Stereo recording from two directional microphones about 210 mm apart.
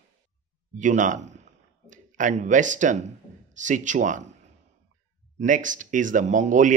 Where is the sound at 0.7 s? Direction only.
35° right (ahead or behind).